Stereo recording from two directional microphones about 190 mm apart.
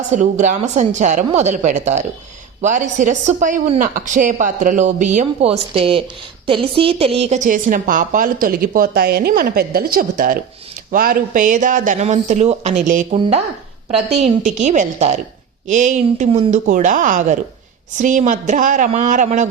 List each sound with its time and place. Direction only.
0.1 s a woman's voice: 40° right (ahead or behind)
14.2 s speech: 40° right (ahead or behind)